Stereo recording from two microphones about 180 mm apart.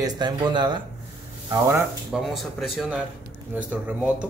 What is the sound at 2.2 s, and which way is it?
Speech, centre (ahead or behind).